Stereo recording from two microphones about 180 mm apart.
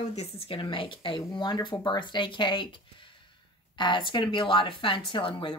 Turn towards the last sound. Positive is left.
turn(degrees=25)  # may be behind; listen again after turning